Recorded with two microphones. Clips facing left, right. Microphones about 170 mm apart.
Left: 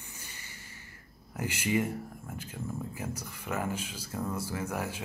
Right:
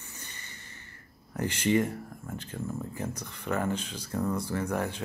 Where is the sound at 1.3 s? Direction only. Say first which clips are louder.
Right 4 dB; 10° left (ahead or behind).